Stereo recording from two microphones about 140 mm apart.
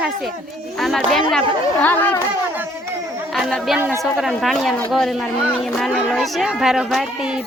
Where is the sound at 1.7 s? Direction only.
10° left (ahead or behind).